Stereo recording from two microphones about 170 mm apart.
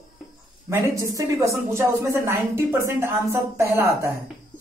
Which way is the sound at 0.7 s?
20° right (ahead or behind).